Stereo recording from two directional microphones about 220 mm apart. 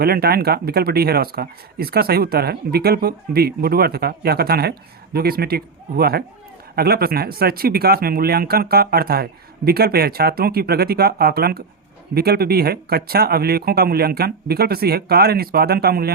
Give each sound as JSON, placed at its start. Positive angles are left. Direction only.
{"t": 0.0, "sound": "speech", "side_deg": -45}